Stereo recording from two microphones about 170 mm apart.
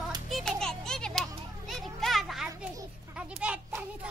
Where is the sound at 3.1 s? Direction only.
5° right (ahead or behind).